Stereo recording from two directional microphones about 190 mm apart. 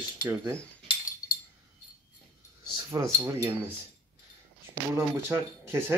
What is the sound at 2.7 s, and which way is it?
Keys jangling, 15° right (ahead or behind).